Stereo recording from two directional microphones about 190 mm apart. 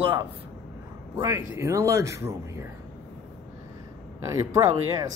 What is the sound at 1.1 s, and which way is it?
A man's voice, 15° right (ahead or behind).